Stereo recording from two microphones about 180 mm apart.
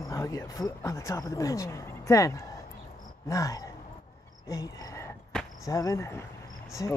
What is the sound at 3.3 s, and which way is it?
Cricket, 20° left (ahead or behind).